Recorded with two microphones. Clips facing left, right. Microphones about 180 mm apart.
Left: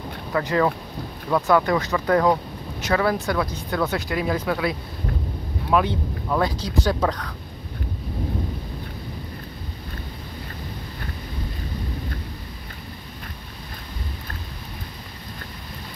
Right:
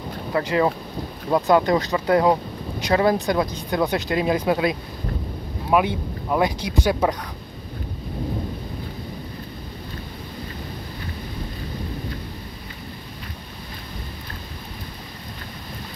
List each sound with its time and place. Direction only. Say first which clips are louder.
0.3 s speech: right 1 dB; 25° right (ahead or behind)